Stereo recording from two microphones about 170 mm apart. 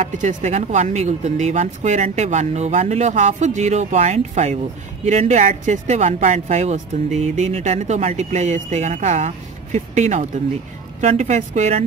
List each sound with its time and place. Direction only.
0.0 s speech: 45° right (ahead or behind)